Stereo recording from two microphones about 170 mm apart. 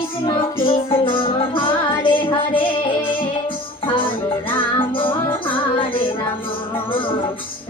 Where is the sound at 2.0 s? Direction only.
30° left (ahead or behind).